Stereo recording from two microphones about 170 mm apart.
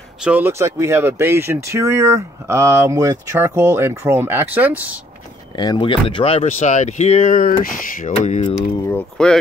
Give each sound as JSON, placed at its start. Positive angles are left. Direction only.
{"t": 0.2, "sound": "speech", "side_deg": -10}
{"t": 5.6, "sound": "speech", "side_deg": 25}
{"t": 8.8, "sound": "speech", "side_deg": 5}